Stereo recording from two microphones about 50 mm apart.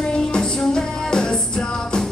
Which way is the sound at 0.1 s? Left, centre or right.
Centre.